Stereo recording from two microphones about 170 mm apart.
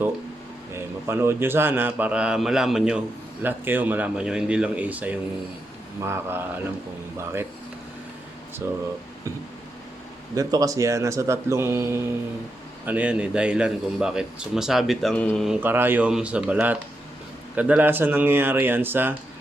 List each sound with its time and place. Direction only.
0.7 s speech: 15° right (ahead or behind)
8.6 s speech: 15° right (ahead or behind)
10.3 s a man's voice: 20° right (ahead or behind); by 15.4 s 5° left (ahead or behind)
15.4 s speech: 10° right (ahead or behind)